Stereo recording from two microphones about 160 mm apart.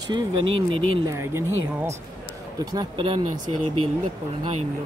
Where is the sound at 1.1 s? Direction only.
15° right (ahead or behind).